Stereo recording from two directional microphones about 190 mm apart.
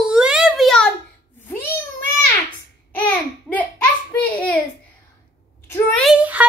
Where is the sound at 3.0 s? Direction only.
10° left (ahead or behind).